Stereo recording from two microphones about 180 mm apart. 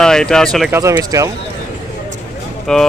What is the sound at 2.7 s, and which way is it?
Speech, 5° left (ahead or behind).